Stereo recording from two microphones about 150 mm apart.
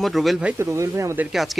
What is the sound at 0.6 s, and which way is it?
Speech, 20° right (ahead or behind).